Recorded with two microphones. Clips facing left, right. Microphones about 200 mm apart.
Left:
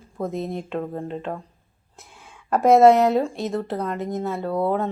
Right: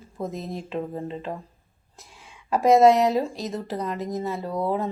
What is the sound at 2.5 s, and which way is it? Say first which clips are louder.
Speech: left 2 dB; centre (ahead or behind).